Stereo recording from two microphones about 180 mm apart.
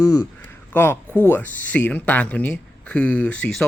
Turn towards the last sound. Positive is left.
turn(degrees=5)  # may be behind; listen again after turning